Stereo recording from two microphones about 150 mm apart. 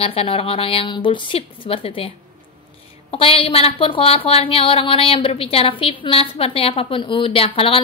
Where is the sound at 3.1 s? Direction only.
35° left (ahead or behind).